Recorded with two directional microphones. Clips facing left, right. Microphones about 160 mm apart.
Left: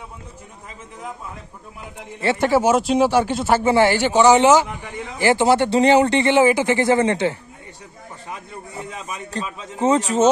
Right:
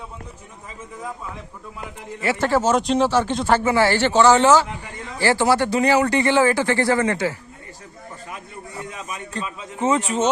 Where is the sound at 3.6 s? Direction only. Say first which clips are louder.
Left 2 dB; 25° left (ahead or behind).